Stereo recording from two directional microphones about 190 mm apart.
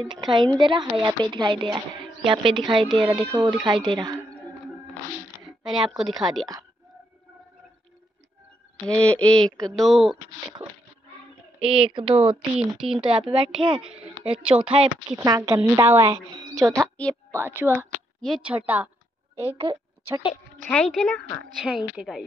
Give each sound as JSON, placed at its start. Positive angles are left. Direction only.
{"t": 0.0, "sound": "a woman's voice", "side_deg": -25}
{"t": 5.6, "sound": "speech", "side_deg": -25}
{"t": 5.9, "sound": "speech", "side_deg": 0}
{"t": 8.8, "sound": "speech", "side_deg": 5}
{"t": 11.6, "sound": "a woman's voice", "side_deg": -30}
{"t": 12.5, "sound": "speech", "side_deg": -5}
{"t": 13.0, "sound": "a woman's voice", "side_deg": -25}
{"t": 15.1, "sound": "a woman's voice", "side_deg": -15}
{"t": 16.8, "sound": "a woman's voice", "side_deg": 5}
{"t": 17.1, "sound": "a woman's voice", "side_deg": -15}
{"t": 19.4, "sound": "a woman's voice", "side_deg": -25}
{"t": 20.6, "sound": "speech", "side_deg": 5}